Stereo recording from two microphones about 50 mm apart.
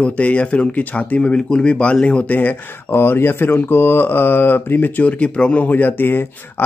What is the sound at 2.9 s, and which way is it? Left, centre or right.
Speech, left.